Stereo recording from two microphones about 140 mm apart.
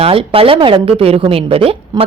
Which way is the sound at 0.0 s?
40° right (ahead or behind).